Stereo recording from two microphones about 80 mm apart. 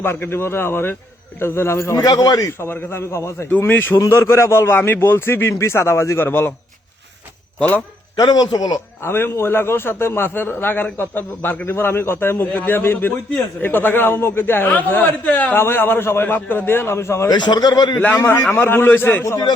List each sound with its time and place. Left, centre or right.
0.0 s a man's voice: left
2.0 s a man's voice: left
2.6 s a man's voice: left
3.6 s a man's voice: left
4.0 s a man's voice: left
8.1 s a man's voice: left
9.0 s a man's voice: left
17.2 s a man's voice: left
18.5 s a man's voice: left